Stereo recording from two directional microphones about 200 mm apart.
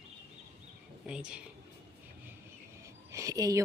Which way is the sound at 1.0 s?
5° right (ahead or behind).